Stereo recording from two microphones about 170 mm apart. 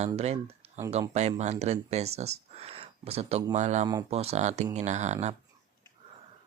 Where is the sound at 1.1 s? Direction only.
40° right (ahead or behind).